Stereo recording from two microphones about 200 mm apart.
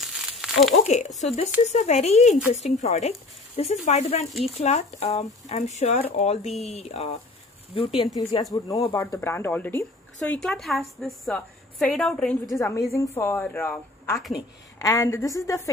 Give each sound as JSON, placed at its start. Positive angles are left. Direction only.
{"t": 0.0, "sound": "crumpling", "side_deg": 0}
{"t": 0.8, "sound": "speech", "side_deg": 35}
{"t": 8.0, "sound": "a woman's voice", "side_deg": 20}
{"t": 12.4, "sound": "a woman's voice", "side_deg": 15}
{"t": 14.8, "sound": "speech", "side_deg": 15}